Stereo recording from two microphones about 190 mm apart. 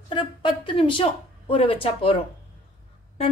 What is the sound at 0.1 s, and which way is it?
Speech, 25° left (ahead or behind).